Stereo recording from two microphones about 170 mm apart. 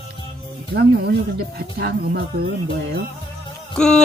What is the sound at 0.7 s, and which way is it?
Speech, 75° right (ahead or behind).